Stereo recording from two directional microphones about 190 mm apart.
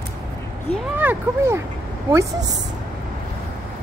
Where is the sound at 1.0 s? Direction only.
10° right (ahead or behind).